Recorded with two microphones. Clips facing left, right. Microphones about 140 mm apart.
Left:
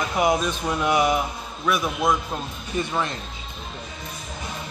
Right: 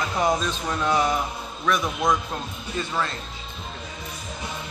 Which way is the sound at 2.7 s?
20° left (ahead or behind).